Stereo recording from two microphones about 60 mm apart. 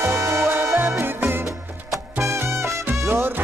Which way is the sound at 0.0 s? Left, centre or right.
Right.